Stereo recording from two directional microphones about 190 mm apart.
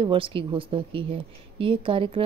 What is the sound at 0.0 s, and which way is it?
Speech, 25° right (ahead or behind).